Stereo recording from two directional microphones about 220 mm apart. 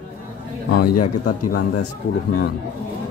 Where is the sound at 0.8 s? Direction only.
90° left.